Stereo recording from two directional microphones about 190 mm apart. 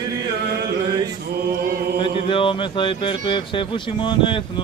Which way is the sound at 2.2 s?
25° left (ahead or behind).